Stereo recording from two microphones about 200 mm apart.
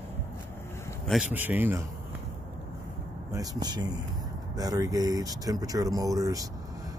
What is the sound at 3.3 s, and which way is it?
Speech, 20° right (ahead or behind).